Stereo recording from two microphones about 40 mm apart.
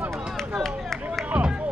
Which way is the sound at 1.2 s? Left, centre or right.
Right.